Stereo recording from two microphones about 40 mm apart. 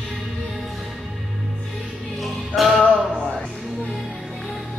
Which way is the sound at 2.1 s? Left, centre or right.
Centre.